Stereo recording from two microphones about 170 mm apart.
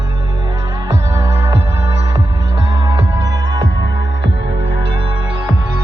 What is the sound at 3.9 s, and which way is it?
Music, 90° right.